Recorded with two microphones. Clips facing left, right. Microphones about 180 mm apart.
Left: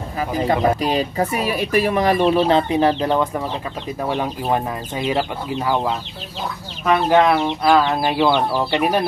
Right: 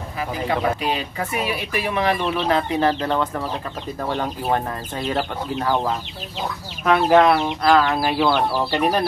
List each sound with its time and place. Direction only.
0.5 s speech: 40° left (ahead or behind)
2.3 s speech: 25° left (ahead or behind); by 7.5 s 5° right (ahead or behind)
7.6 s speech: 5° left (ahead or behind)
8.0 s speech: 5° right (ahead or behind)